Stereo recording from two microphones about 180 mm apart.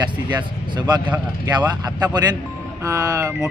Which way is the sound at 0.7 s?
25° right (ahead or behind).